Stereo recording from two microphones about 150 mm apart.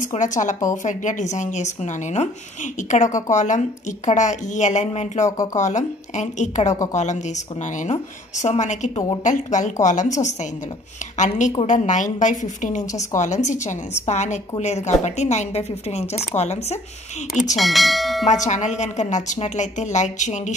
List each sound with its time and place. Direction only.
0.0 s a woman's voice: 55° left (ahead or behind)
2.9 s a woman's voice: 55° left (ahead or behind)
5.2 s speech: 25° left (ahead or behind)
5.6 s a woman's voice: 55° left (ahead or behind)
17.6 s speech: centre (ahead or behind)
18.2 s a woman's voice: 50° left (ahead or behind)